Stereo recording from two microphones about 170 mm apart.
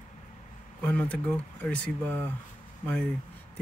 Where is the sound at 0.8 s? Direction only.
5° left (ahead or behind).